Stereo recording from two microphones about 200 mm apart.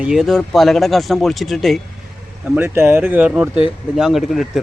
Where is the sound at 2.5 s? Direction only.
10° right (ahead or behind).